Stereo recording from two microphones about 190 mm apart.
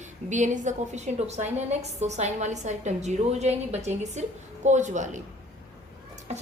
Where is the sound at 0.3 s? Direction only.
40° right (ahead or behind).